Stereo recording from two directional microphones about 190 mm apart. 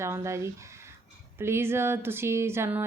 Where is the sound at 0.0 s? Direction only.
15° right (ahead or behind).